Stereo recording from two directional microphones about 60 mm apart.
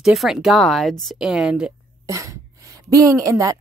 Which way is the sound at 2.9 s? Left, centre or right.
Right.